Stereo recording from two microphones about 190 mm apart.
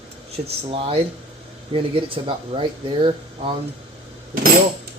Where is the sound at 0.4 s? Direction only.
30° right (ahead or behind).